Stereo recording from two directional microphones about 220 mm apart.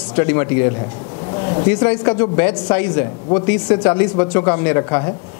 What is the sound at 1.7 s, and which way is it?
A man's voice, 10° left (ahead or behind).